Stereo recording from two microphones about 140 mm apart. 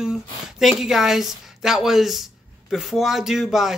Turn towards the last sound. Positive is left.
turn(degrees=0)  # may be behind; listen again after turning